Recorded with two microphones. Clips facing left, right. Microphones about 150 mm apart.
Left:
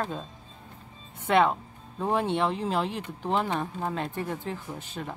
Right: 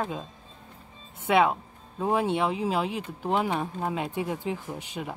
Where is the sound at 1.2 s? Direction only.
5° right (ahead or behind).